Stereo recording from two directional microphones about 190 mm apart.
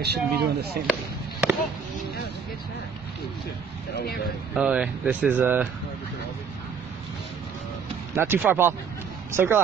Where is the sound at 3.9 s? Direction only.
55° left (ahead or behind).